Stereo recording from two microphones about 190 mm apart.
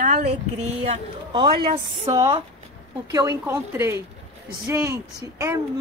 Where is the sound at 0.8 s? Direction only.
25° right (ahead or behind).